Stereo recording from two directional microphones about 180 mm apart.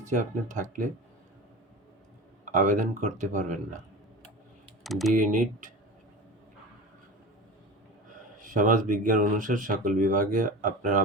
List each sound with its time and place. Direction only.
0.1 s speech: 40° right (ahead or behind)
2.4 s speech: 45° right (ahead or behind)
4.8 s speech: centre (ahead or behind)
5.1 s speech: 45° right (ahead or behind)
8.1 s speech: 50° right (ahead or behind)